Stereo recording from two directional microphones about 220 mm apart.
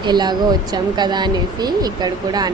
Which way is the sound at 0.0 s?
20° right (ahead or behind).